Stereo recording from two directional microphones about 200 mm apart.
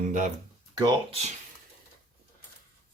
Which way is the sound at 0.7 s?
25° right (ahead or behind).